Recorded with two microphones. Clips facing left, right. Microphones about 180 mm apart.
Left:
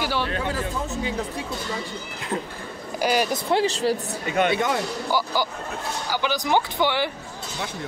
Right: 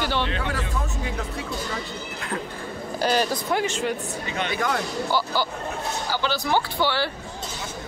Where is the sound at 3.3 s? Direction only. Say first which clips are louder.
Left 3 dB; 30° left (ahead or behind).